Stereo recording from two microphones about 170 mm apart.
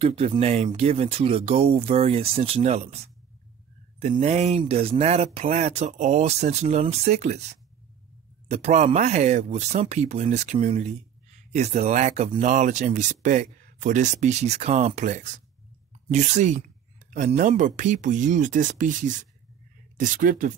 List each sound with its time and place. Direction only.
0.0 s speech: 35° right (ahead or behind)
4.2 s speech: 40° right (ahead or behind)